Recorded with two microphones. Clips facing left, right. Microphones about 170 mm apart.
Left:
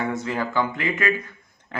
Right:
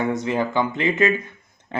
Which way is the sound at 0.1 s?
20° right (ahead or behind).